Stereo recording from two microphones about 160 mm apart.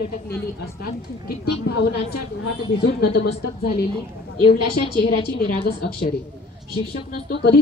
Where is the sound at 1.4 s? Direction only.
85° left.